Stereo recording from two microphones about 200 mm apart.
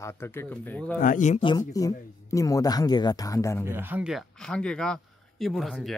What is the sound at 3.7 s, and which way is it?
Speech, 10° right (ahead or behind).